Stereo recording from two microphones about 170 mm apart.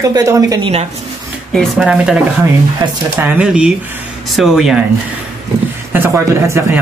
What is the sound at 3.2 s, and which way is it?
Speech, 5° right (ahead or behind).